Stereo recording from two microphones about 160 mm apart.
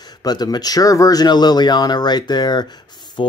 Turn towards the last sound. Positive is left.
turn(degrees=30)  # may be behind; listen again after turning